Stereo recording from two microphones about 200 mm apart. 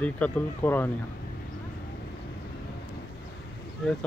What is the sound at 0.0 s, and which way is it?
Speech, 10° left (ahead or behind).